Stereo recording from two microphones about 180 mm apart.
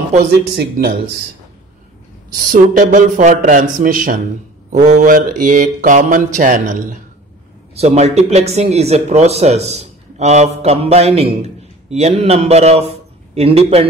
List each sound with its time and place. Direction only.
0.3 s speech: 60° right (ahead or behind)
2.3 s mantra: 50° right (ahead or behind)
7.7 s speech: 35° right (ahead or behind)